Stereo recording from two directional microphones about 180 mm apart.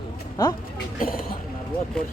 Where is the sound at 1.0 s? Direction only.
55° left (ahead or behind).